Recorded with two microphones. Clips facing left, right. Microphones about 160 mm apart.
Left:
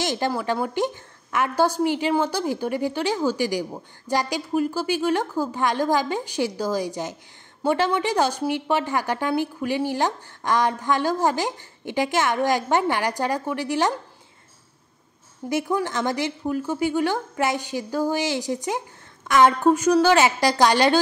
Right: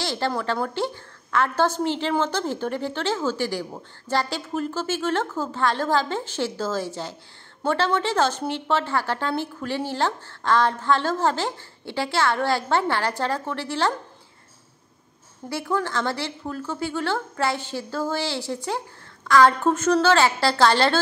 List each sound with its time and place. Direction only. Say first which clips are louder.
0.0 s a woman's voice: left 1 dB; 15° left (ahead or behind)
15.5 s a woman's voice: left 2 dB; 20° left (ahead or behind)